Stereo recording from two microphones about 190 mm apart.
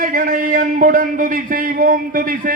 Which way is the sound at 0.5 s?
45° right (ahead or behind).